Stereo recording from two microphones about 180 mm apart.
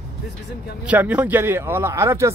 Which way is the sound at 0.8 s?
10° right (ahead or behind).